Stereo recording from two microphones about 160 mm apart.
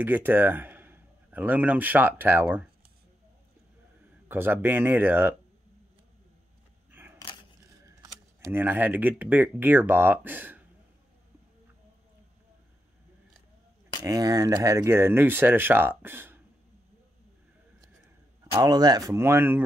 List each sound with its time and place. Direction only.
0.0 s a man's voice: 10° right (ahead or behind)
4.3 s speech: 15° right (ahead or behind)
6.9 s single-lens reflex camera: 10° right (ahead or behind)
7.9 s speech: 15° right (ahead or behind)
14.0 s speech: 20° right (ahead or behind)
18.5 s speech: 20° right (ahead or behind)